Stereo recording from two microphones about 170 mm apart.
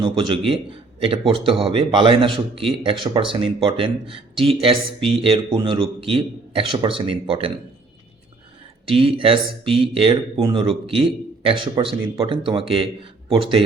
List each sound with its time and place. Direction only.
0.0 s speech: 30° right (ahead or behind)
8.9 s speech: 35° right (ahead or behind)